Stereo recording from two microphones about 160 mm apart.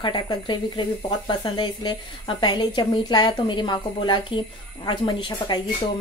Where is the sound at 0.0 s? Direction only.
30° left (ahead or behind).